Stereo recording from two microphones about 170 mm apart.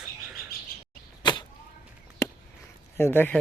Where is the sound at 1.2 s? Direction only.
25° left (ahead or behind).